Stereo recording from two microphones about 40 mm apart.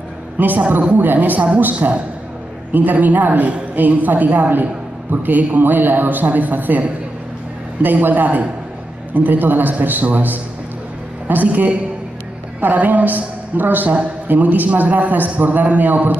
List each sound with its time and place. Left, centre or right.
0.7 s a woman's voice: right